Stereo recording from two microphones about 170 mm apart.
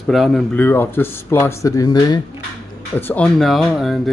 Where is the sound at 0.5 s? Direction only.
15° left (ahead or behind).